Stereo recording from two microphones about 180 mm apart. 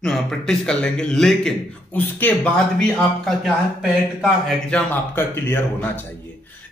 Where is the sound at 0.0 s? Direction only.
5° left (ahead or behind).